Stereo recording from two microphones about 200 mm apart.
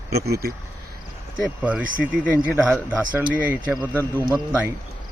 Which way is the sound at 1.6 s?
5° right (ahead or behind).